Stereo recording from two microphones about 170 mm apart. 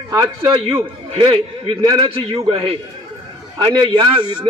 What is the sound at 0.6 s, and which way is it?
A man's voice, 35° right (ahead or behind).